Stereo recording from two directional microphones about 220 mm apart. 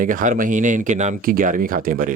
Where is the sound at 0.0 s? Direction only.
35° right (ahead or behind).